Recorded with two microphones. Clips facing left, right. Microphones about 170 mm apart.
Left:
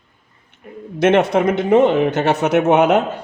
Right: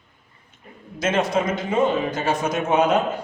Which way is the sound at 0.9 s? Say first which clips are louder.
Left 7 dB; 65° left (ahead or behind).